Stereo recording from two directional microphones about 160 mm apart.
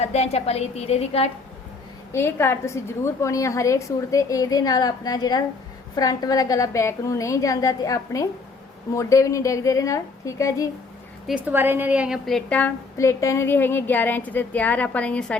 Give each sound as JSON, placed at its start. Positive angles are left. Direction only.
{"t": 0.0, "sound": "a woman's voice", "side_deg": 45}
{"t": 2.1, "sound": "a woman's voice", "side_deg": 15}
{"t": 11.3, "sound": "a woman's voice", "side_deg": -10}